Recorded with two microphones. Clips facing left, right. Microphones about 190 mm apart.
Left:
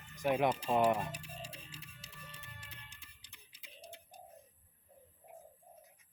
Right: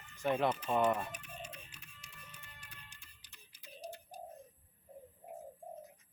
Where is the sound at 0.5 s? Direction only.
30° left (ahead or behind).